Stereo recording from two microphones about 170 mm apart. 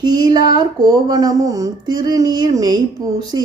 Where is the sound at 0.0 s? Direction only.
25° right (ahead or behind).